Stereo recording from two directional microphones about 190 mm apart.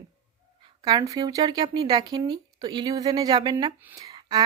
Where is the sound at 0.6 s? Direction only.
20° right (ahead or behind).